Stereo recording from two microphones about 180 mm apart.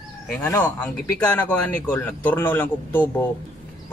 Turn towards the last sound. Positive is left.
turn(degrees=10)  # may be behind; listen again after turning